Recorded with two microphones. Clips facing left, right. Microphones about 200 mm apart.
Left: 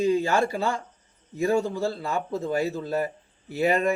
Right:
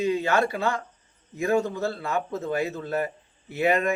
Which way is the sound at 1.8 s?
35° left (ahead or behind).